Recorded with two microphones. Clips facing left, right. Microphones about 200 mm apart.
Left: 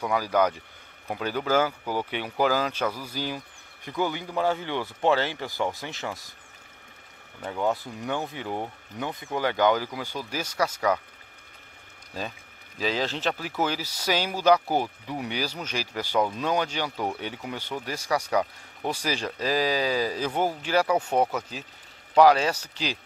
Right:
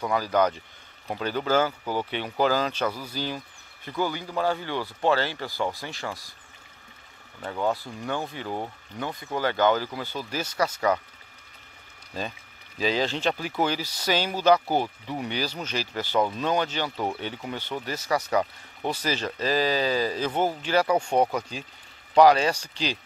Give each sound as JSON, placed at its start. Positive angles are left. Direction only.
{"t": 0.0, "sound": "speech", "side_deg": 10}
{"t": 7.6, "sound": "speech", "side_deg": 20}
{"t": 12.1, "sound": "speech", "side_deg": 5}
{"t": 18.3, "sound": "speech", "side_deg": -5}
{"t": 18.9, "sound": "speech", "side_deg": 10}